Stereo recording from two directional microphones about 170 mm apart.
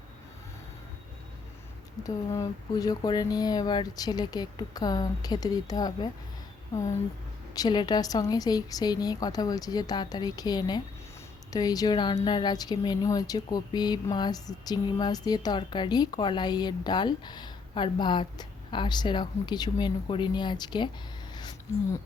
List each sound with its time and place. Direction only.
2.0 s speech: 20° left (ahead or behind)
7.5 s speech: 25° left (ahead or behind)